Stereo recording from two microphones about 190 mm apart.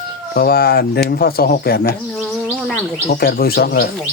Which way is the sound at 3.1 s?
55° left (ahead or behind).